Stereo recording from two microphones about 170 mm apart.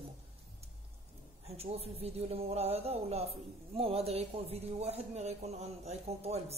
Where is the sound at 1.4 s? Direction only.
35° right (ahead or behind).